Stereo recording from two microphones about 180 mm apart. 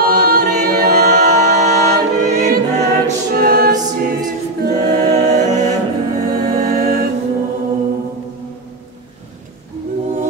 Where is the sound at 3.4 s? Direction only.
55° right (ahead or behind).